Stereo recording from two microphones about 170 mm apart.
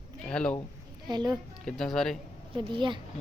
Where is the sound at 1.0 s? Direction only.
25° right (ahead or behind).